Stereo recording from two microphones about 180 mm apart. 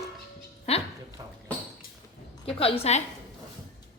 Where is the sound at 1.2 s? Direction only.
20° right (ahead or behind).